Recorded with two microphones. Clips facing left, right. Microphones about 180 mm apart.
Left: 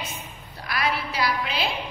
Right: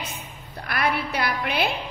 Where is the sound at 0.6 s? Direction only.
60° right (ahead or behind).